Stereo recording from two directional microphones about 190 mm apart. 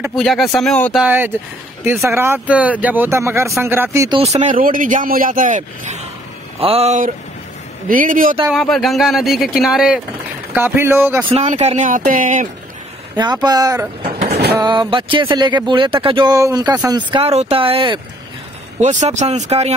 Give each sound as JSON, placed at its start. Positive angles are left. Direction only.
{"t": 0.1, "sound": "speech", "side_deg": 0}
{"t": 1.0, "sound": "speech", "side_deg": -10}
{"t": 4.2, "sound": "speech", "side_deg": -35}
{"t": 7.9, "sound": "speech", "side_deg": -45}
{"t": 8.5, "sound": "speech", "side_deg": 0}
{"t": 11.2, "sound": "speech", "side_deg": -35}
{"t": 13.2, "sound": "speech", "side_deg": -20}
{"t": 14.0, "sound": "train", "side_deg": -30}
{"t": 14.6, "sound": "speech", "side_deg": -25}
{"t": 18.8, "sound": "speech", "side_deg": -40}